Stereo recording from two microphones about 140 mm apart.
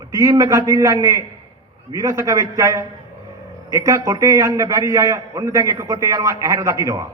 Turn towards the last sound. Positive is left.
turn(degrees=-25)  # may be behind; listen again after turning